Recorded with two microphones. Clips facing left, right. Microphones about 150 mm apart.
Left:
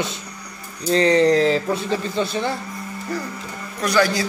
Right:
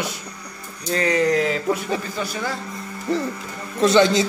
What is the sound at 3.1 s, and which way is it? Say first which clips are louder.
Speech: right 6 dB; 25° right (ahead or behind).